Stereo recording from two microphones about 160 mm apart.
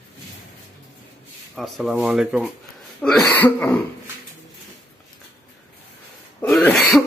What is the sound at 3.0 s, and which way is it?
Throat clearing, 5° left (ahead or behind).